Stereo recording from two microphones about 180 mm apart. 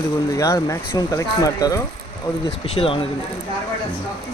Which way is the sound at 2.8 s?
30° left (ahead or behind).